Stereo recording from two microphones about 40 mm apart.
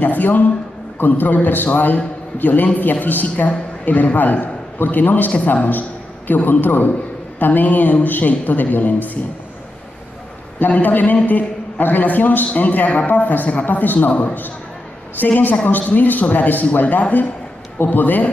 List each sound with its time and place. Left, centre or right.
0.0 s a man's voice: left
10.7 s a man's voice: left